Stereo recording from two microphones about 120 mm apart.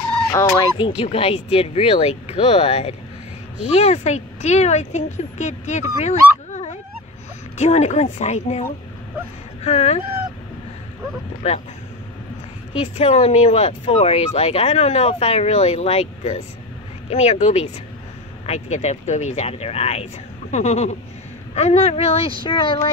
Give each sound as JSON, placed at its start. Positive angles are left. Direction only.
{"t": 0.3, "sound": "speech", "side_deg": 25}
{"t": 0.7, "sound": "speech", "side_deg": 45}
{"t": 3.7, "sound": "speech", "side_deg": 65}
{"t": 7.5, "sound": "speech", "side_deg": 70}
{"t": 9.7, "sound": "speech", "side_deg": 60}
{"t": 11.4, "sound": "speech", "side_deg": 65}
{"t": 12.7, "sound": "speech", "side_deg": 65}